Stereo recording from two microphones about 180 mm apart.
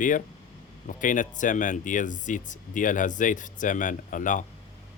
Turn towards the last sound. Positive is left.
turn(degrees=45)  # may be behind; listen again after turning